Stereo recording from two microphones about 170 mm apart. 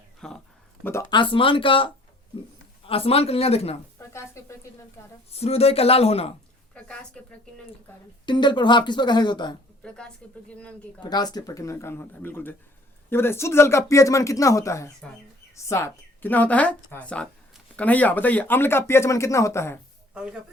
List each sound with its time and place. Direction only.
0.2 s a sound: 5° left (ahead or behind)
1.1 s speech: 30° left (ahead or behind)
3.9 s a sound: 15° left (ahead or behind)
5.3 s speech: 35° left (ahead or behind)
6.7 s a woman's voice: 5° left (ahead or behind)
8.3 s speech: 25° left (ahead or behind)
9.8 s a woman's voice: 5° left (ahead or behind)
11.0 s a woman's voice: 25° left (ahead or behind)